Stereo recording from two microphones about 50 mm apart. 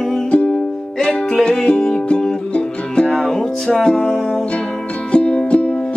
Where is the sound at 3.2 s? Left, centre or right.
Centre.